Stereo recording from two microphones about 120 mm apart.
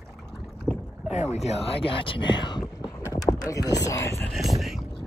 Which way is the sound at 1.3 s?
60° left (ahead or behind).